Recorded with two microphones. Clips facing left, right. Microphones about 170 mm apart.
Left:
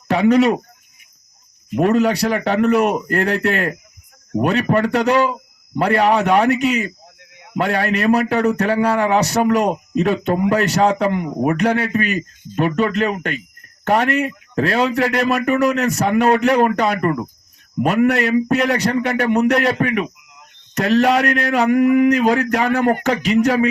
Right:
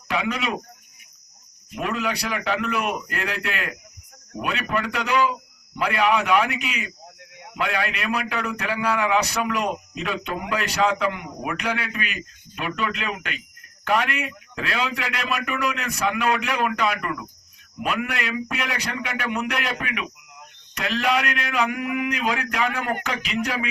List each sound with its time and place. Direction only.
0.1 s speech: 40° left (ahead or behind)
1.7 s a man's voice: 40° left (ahead or behind)
5.0 s a man's voice: 60° left (ahead or behind)
6.0 s a man's voice: 35° left (ahead or behind)